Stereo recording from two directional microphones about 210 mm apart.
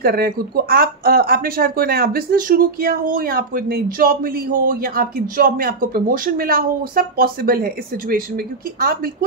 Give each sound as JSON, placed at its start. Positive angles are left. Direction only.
{"t": 0.0, "sound": "speech", "side_deg": -45}